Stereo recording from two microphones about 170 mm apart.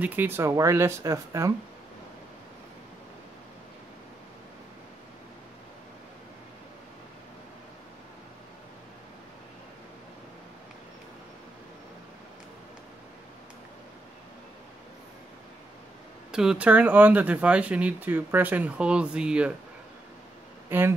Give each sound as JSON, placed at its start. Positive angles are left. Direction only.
{"t": 0.0, "sound": "speech", "side_deg": -10}
{"t": 16.3, "sound": "speech", "side_deg": -5}
{"t": 20.7, "sound": "speech", "side_deg": -10}